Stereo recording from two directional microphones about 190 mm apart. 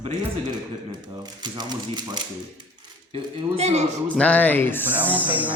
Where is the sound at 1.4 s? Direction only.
20° right (ahead or behind).